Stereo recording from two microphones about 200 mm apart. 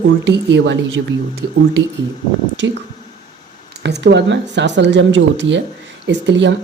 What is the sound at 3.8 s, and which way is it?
Speech, 60° right (ahead or behind).